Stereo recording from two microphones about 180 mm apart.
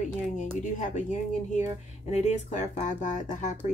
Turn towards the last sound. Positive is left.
turn(degrees=45)  # may be behind; listen again after turning